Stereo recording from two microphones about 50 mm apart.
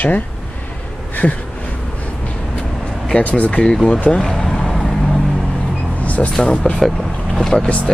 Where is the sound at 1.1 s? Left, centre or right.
Left.